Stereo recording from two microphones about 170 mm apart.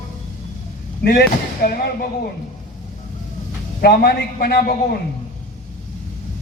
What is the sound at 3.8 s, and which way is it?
Speech, 65° left (ahead or behind).